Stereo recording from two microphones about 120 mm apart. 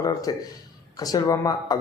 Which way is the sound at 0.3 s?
35° left (ahead or behind).